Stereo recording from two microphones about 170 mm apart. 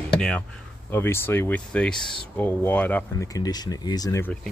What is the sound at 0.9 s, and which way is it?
Speech, 15° left (ahead or behind).